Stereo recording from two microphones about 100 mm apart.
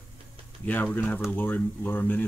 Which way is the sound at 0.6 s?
15° left (ahead or behind).